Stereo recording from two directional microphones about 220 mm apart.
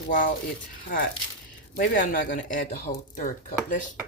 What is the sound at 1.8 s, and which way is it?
Speech, 40° left (ahead or behind).